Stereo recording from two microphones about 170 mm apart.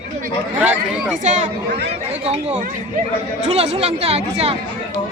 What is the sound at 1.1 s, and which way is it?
Speech, 45° right (ahead or behind).